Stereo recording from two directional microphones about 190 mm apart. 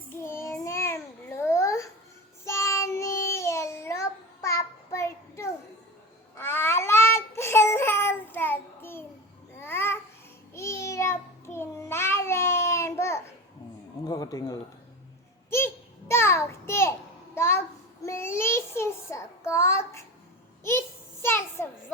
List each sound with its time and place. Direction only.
0.1 s babbling: 15° left (ahead or behind)
2.4 s child singing: 15° left (ahead or behind)
6.3 s babbling: 10° left (ahead or behind)
10.5 s child singing: 15° left (ahead or behind)
14.0 s a sound: 20° left (ahead or behind)
18.0 s child singing: 15° left (ahead or behind)
20.7 s a sound: 15° left (ahead or behind)